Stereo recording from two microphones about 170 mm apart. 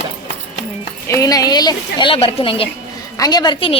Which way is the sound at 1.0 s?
20° left (ahead or behind).